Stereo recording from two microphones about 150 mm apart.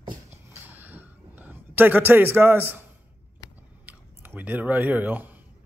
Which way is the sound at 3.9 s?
10° right (ahead or behind).